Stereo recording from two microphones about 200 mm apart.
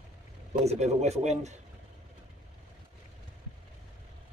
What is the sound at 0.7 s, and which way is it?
Speech, 35° right (ahead or behind).